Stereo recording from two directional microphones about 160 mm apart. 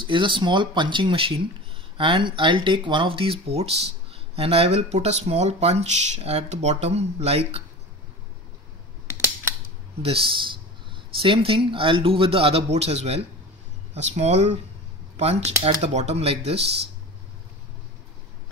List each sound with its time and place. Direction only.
0.0 s speech: 30° right (ahead or behind)
10.0 s speech: 35° right (ahead or behind)